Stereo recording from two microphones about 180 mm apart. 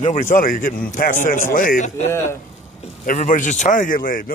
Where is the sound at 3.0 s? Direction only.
45° left (ahead or behind).